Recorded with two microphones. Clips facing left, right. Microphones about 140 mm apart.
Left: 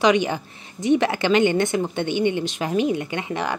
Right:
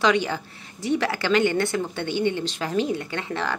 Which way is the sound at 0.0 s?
15° left (ahead or behind).